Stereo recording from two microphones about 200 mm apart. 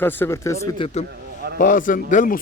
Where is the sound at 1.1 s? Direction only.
50° right (ahead or behind).